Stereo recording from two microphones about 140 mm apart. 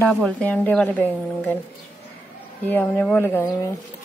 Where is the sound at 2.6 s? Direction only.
10° left (ahead or behind).